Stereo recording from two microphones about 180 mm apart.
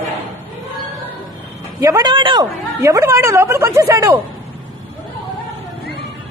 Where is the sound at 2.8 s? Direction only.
15° right (ahead or behind).